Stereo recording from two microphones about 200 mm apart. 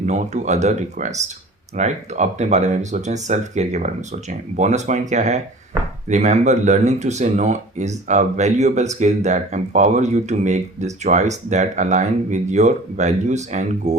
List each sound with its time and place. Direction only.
0.0 s speech: 35° right (ahead or behind)